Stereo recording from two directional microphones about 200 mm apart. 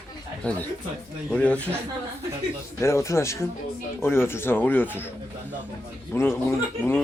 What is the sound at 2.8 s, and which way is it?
Speech, 15° left (ahead or behind).